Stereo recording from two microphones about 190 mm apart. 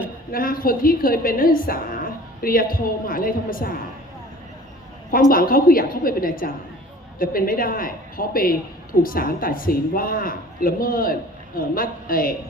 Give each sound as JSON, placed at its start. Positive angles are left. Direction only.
{"t": 0.3, "sound": "a woman's voice", "side_deg": 50}
{"t": 5.3, "sound": "a woman's voice", "side_deg": 50}